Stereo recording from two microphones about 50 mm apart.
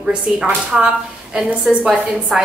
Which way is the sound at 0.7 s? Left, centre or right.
Centre.